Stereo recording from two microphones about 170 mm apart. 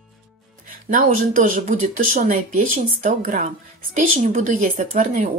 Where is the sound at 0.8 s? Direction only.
50° right (ahead or behind).